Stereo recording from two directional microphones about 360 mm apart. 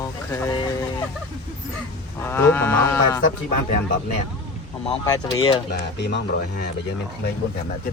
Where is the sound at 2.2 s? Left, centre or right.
Centre.